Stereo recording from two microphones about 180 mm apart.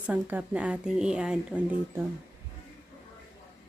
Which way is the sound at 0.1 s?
10° right (ahead or behind).